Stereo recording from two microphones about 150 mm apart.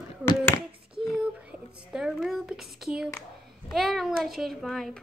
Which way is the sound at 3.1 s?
20° left (ahead or behind).